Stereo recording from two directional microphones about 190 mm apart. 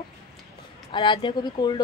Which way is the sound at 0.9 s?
25° left (ahead or behind).